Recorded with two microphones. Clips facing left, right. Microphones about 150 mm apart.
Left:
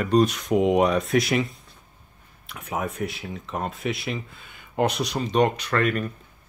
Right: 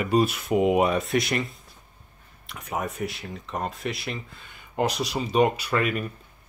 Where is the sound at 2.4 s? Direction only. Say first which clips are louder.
Left 1 dB; centre (ahead or behind).